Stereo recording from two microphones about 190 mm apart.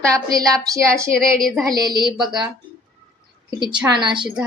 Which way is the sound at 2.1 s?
Centre (ahead or behind).